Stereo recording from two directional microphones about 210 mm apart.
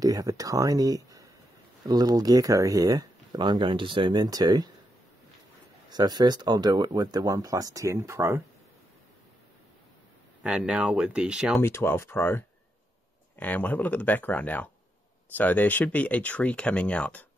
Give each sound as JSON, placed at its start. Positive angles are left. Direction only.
{"t": 0.0, "sound": "speech", "side_deg": -15}
{"t": 5.9, "sound": "speech", "side_deg": -20}
{"t": 10.4, "sound": "speech", "side_deg": -5}
{"t": 11.6, "sound": "speech", "side_deg": 10}